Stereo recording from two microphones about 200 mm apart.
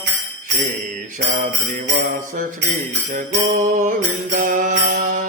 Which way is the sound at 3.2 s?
40° right (ahead or behind).